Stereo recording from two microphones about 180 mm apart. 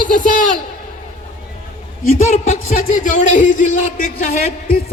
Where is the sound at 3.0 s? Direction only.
45° left (ahead or behind).